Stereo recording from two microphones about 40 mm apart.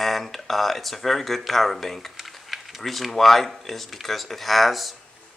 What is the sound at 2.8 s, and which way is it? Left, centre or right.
Speech, centre.